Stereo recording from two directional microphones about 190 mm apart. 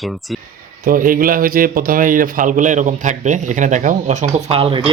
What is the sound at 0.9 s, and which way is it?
Speech, 45° right (ahead or behind).